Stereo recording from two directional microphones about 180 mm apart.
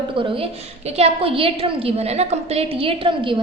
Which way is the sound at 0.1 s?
30° right (ahead or behind).